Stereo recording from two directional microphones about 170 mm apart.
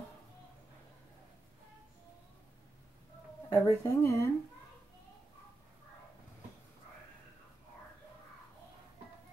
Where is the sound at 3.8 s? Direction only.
15° left (ahead or behind).